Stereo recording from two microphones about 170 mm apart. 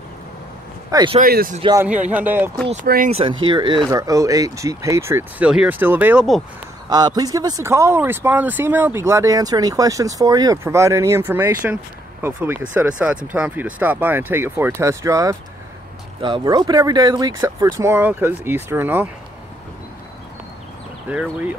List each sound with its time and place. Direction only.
0.9 s speech: 30° right (ahead or behind)
1.2 s speech: 60° right (ahead or behind)
2.0 s speech: 10° right (ahead or behind)
3.1 s speech: 35° right (ahead or behind); by 6.4 s 5° right (ahead or behind)
6.9 s speech: 25° right (ahead or behind)
21.1 s speech: 10° right (ahead or behind)